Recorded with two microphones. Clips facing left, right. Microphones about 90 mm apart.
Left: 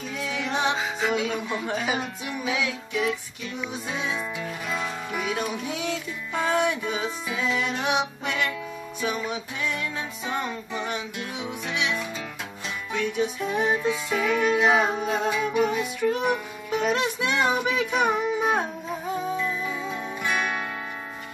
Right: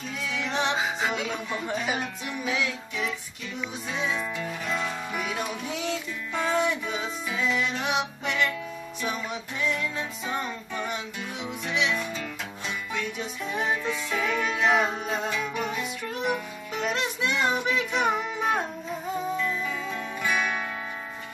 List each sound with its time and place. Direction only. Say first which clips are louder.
0.3 s music: left 2 dB; 10° left (ahead or behind)
0.7 s music: left 2 dB; centre (ahead or behind)